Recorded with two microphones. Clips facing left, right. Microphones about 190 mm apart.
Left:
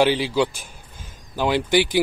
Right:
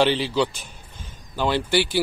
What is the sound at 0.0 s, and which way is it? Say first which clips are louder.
Speech: left 1 dB; 10° left (ahead or behind).